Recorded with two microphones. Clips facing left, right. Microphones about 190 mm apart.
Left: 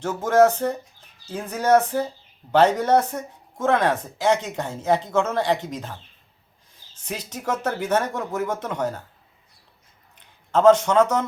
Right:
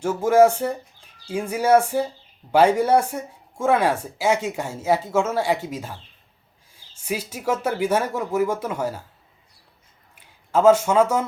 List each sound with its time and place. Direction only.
0.0 s speech: 10° right (ahead or behind)
10.2 s a man's voice: 10° right (ahead or behind)